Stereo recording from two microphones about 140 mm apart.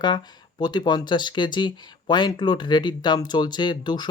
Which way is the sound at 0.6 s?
30° left (ahead or behind).